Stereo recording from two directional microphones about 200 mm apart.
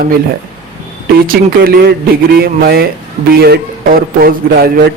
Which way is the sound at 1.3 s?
50° right (ahead or behind).